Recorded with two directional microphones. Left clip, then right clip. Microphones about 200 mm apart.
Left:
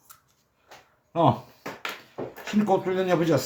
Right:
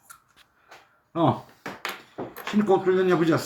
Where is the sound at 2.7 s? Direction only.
40° left (ahead or behind).